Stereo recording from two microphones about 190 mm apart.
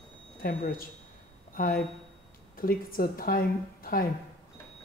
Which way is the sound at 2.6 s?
50° left (ahead or behind).